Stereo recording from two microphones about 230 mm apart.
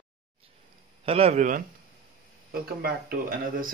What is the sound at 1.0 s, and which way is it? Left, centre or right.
Speech, right.